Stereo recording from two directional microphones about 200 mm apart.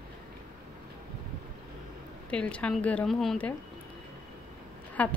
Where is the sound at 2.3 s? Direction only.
5° left (ahead or behind).